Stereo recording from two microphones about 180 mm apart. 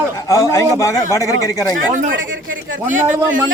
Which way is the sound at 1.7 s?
45° right (ahead or behind).